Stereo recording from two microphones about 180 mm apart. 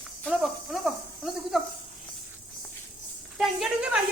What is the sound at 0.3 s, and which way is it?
Snake, centre (ahead or behind).